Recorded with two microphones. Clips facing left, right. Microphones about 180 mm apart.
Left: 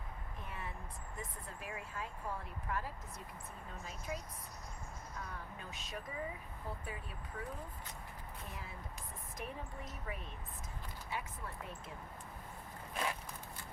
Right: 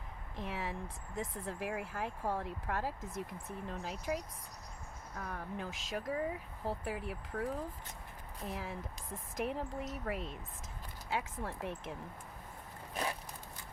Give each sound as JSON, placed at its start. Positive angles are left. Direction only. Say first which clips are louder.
{"t": 0.3, "sound": "speech", "louder": "right 9 dB", "side_deg": -90}
{"t": 5.2, "sound": "speech", "louder": "right 10 dB", "side_deg": -80}
{"t": 8.4, "sound": "speech", "louder": "right 11 dB", "side_deg": -90}